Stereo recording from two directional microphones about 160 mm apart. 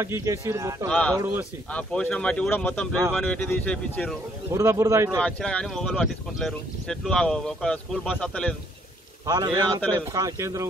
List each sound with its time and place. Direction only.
0.0 s speech: 15° right (ahead or behind)
0.8 s speech: 5° left (ahead or behind)
1.1 s speech: 20° right (ahead or behind)
1.7 s speech: 5° left (ahead or behind)
4.5 s speech: 15° right (ahead or behind)
5.2 s speech: 5° left (ahead or behind)
9.2 s speech: 25° right (ahead or behind)